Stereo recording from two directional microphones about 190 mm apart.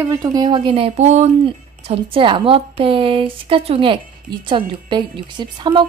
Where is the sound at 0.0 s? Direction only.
20° right (ahead or behind).